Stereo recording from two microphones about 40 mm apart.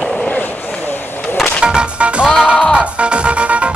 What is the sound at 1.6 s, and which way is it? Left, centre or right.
Music, right.